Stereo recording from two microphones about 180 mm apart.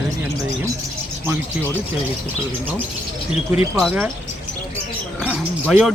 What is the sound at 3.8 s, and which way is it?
Speech, 5° right (ahead or behind).